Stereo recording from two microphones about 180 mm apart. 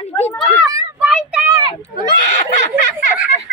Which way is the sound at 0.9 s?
5° right (ahead or behind).